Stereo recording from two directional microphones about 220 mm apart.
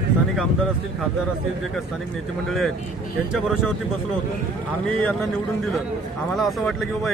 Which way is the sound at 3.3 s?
Centre (ahead or behind).